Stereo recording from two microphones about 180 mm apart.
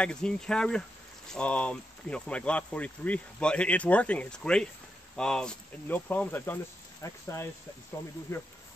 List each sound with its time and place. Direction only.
0.0 s speech: 5° left (ahead or behind)